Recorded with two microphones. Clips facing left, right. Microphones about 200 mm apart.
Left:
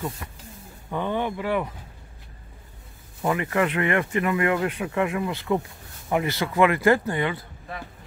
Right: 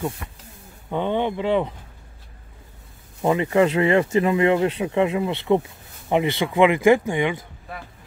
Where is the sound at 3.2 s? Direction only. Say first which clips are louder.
Right 5 dB; 25° right (ahead or behind).